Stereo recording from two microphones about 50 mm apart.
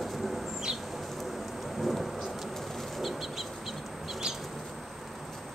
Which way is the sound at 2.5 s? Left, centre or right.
Centre.